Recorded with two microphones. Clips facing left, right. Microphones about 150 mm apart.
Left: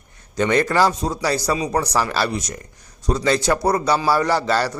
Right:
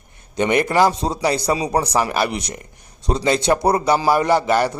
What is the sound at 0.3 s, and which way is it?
A man's voice, 20° right (ahead or behind).